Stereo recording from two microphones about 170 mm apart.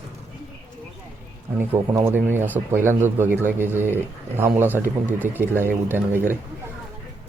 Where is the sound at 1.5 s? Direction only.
15° right (ahead or behind).